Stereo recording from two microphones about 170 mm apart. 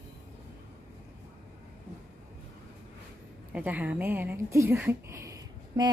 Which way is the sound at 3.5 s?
10° right (ahead or behind).